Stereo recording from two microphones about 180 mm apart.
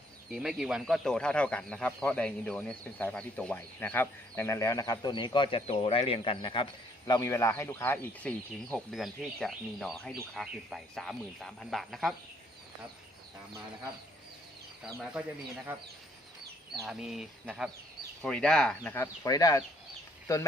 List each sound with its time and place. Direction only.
0.3 s speech: centre (ahead or behind); by 6.7 s 30° left (ahead or behind)
7.1 s speech: 15° left (ahead or behind); by 12.1 s centre (ahead or behind)
14.8 s speech: 10° right (ahead or behind)
16.8 s speech: 5° right (ahead or behind)
19.2 s speech: 20° left (ahead or behind)